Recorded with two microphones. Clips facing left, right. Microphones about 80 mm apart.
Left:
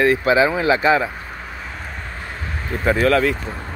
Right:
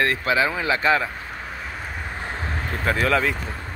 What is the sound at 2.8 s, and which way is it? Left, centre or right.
Speech, centre.